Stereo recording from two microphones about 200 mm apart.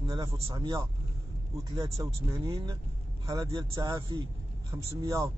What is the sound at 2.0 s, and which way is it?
Speech, 20° right (ahead or behind).